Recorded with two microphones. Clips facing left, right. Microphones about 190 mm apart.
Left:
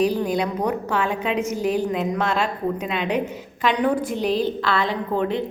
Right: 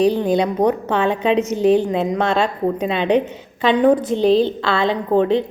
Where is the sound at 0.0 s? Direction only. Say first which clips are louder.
Right 5 dB; 25° right (ahead or behind).